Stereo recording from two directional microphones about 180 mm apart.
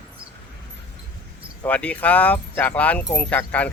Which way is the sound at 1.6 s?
5° left (ahead or behind).